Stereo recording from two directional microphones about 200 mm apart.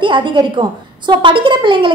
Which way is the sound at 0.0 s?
25° right (ahead or behind).